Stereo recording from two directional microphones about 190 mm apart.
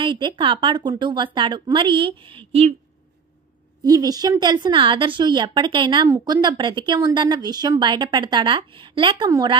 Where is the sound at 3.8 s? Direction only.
20° right (ahead or behind).